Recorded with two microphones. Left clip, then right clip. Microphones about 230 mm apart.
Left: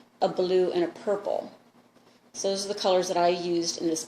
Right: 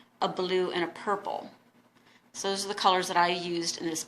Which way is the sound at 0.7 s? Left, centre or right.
Right.